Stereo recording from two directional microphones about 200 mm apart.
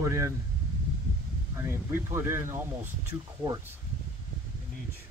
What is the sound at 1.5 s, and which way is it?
Speech, 10° right (ahead or behind).